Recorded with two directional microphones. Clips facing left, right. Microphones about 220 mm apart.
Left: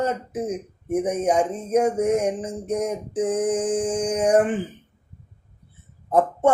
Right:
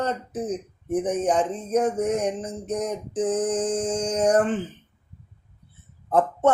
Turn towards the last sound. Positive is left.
turn(degrees=10)  # may be behind; listen again after turning